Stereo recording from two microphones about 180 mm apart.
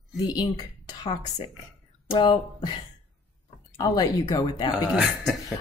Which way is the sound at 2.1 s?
25° left (ahead or behind).